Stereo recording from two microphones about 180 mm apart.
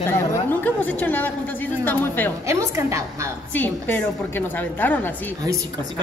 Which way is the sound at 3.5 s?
10° left (ahead or behind).